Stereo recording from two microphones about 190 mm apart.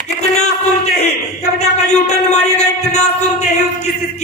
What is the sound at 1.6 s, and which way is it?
Speech, 35° left (ahead or behind).